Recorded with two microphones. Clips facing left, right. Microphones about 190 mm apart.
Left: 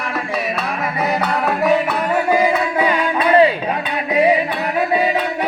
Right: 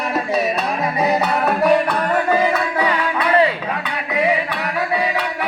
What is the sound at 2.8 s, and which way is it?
Music, 25° left (ahead or behind).